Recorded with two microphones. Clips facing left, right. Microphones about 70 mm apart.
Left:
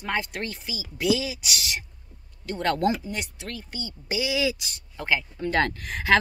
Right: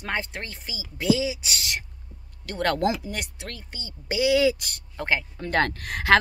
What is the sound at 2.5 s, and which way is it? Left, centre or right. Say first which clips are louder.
Speech: right 1 dB; right.